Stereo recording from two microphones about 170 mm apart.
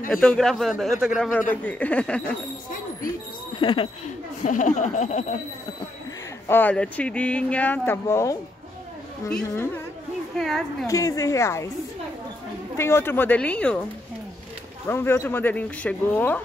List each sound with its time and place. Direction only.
0.1 s a man's voice: 5° left (ahead or behind)
3.5 s speech: 30° left (ahead or behind)
4.5 s a sound: 50° left (ahead or behind)
6.4 s speech: 10° left (ahead or behind)
10.3 s a man's voice: centre (ahead or behind)
10.9 s a woman's voice: 20° left (ahead or behind)
12.7 s speech: 15° left (ahead or behind)
14.9 s speech: 15° left (ahead or behind)